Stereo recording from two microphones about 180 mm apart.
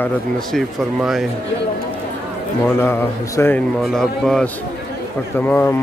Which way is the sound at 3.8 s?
Centre (ahead or behind).